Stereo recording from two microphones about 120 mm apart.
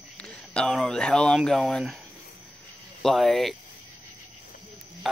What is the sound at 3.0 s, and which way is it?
Speech, centre (ahead or behind).